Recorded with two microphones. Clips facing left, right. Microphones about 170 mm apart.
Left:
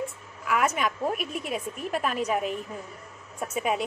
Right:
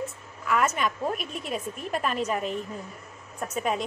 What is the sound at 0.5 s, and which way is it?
A woman's voice, 10° left (ahead or behind).